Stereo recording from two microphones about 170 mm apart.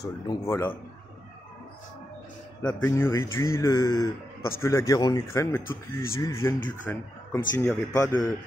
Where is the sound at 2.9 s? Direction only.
15° left (ahead or behind).